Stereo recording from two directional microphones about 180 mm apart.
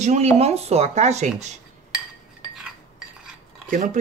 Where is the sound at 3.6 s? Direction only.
45° right (ahead or behind).